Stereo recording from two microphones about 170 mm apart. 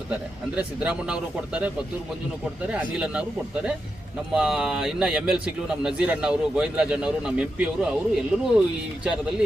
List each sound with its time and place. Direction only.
0.1 s a man's voice: 5° right (ahead or behind)
2.9 s a man's voice: 5° right (ahead or behind)
4.4 s a man's voice: 5° right (ahead or behind)